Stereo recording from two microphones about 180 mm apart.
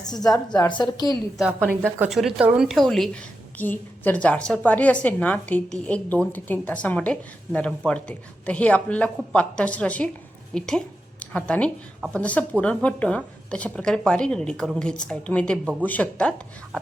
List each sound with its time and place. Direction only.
0.4 s a woman's voice: 25° left (ahead or behind)
1.4 s a woman's voice: 5° right (ahead or behind)